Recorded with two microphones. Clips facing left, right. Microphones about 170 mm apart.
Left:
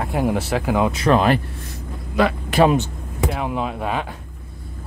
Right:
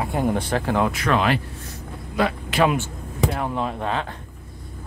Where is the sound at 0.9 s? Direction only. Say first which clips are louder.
Left 4 dB; 30° left (ahead or behind).